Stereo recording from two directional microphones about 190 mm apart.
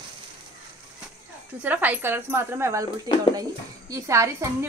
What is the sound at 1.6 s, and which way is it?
Speech, 10° right (ahead or behind).